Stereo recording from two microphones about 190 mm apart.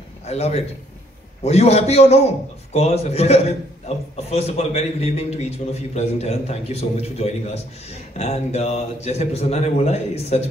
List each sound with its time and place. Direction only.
0.3 s a man's voice: 35° left (ahead or behind)